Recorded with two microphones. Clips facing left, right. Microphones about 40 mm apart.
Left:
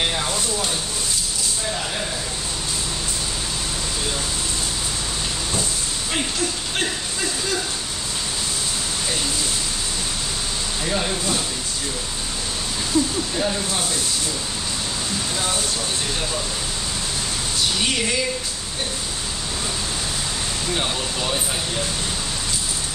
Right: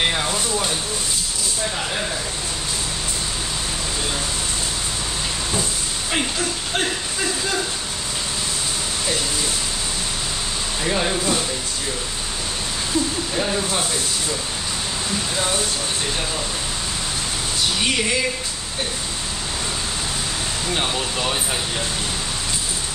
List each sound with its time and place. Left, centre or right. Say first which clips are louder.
10.9 s speech: right 3 dB; centre
20.7 s speech: right 2 dB; centre